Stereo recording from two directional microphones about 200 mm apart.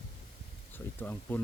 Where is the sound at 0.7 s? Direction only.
10° left (ahead or behind).